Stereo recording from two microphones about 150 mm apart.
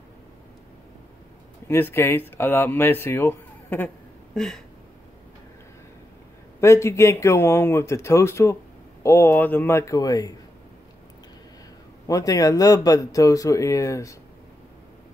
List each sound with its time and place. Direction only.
1.7 s speech: 15° left (ahead or behind)
4.4 s a sound: 5° left (ahead or behind)
6.6 s speech: 20° left (ahead or behind)
12.1 s speech: 25° left (ahead or behind)